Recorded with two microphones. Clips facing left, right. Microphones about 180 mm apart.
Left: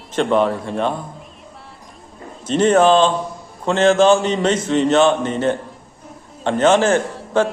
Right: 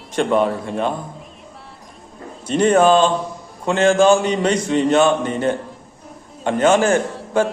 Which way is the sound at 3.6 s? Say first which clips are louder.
Left 1 dB; 10° right (ahead or behind).